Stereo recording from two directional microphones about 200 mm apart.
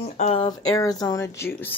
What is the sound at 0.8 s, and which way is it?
Speech, 20° left (ahead or behind).